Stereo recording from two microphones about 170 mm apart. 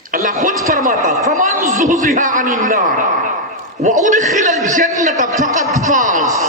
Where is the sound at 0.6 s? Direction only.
55° right (ahead or behind).